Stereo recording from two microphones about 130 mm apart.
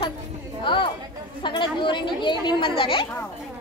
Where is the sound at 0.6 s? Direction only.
40° left (ahead or behind).